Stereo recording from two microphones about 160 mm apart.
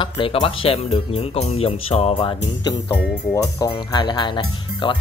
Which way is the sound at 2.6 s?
25° left (ahead or behind).